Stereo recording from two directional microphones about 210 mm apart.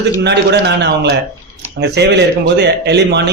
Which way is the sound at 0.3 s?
55° right (ahead or behind).